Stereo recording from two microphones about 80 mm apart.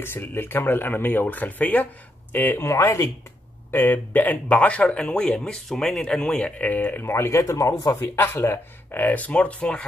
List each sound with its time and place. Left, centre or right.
0.0 s speech: left
2.7 s speech: left
3.7 s speech: left
8.0 s speech: left; by 9.8 s centre